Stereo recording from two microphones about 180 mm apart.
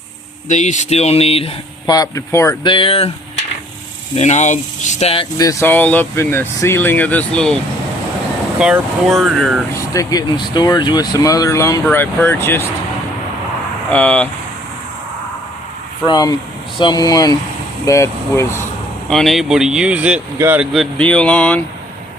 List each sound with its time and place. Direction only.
0.4 s speech: 40° left (ahead or behind)
1.9 s speech: 20° left (ahead or behind)
2.6 s speech: 30° left (ahead or behind)
4.1 s speech: 40° left (ahead or behind)
5.5 s speech: 15° left (ahead or behind); by 9.6 s centre (ahead or behind)
9.7 s speech: 20° left (ahead or behind)
13.9 s speech: 10° left (ahead or behind)
16.0 s speech: 20° left (ahead or behind)
19.0 s speech: centre (ahead or behind)
20.7 s speech: 5° left (ahead or behind)